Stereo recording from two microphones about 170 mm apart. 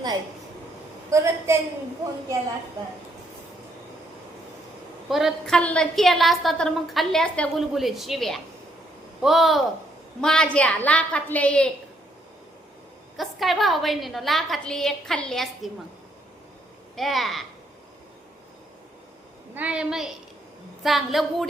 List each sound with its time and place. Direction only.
1.1 s a woman's voice: 15° right (ahead or behind)
5.0 s a woman's voice: centre (ahead or behind)
13.1 s a woman's voice: centre (ahead or behind)
16.9 s a woman's voice: centre (ahead or behind)
19.5 s a woman's voice: 5° right (ahead or behind)